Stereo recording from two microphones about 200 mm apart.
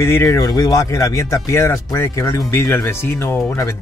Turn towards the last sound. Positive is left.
turn(degrees=15)  # may be behind; listen again after turning